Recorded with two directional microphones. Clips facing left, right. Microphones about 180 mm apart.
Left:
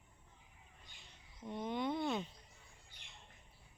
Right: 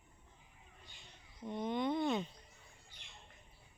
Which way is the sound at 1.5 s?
5° left (ahead or behind).